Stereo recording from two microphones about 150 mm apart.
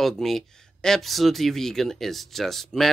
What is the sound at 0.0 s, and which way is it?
Speech, centre (ahead or behind).